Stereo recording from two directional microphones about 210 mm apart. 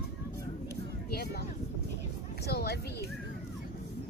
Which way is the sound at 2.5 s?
50° left (ahead or behind).